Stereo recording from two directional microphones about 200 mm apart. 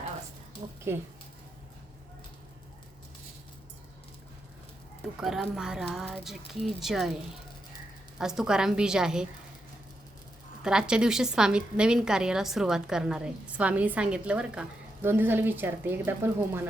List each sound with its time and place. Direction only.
0.6 s a sound: 30° right (ahead or behind)
5.2 s a woman's voice: 5° right (ahead or behind)
8.2 s a woman's voice: 5° right (ahead or behind)
10.6 s a woman's voice: 5° right (ahead or behind)